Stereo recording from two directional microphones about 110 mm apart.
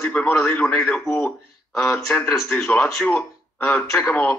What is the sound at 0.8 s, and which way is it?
A man's voice, 5° left (ahead or behind).